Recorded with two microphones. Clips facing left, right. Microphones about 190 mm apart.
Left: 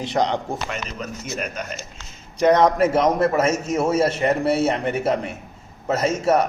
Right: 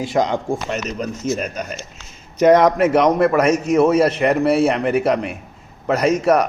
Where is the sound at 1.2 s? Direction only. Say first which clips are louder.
Right 11 dB; 30° right (ahead or behind).